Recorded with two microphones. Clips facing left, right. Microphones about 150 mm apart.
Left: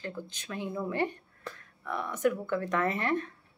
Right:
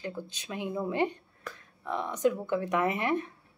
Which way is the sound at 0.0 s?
15° right (ahead or behind).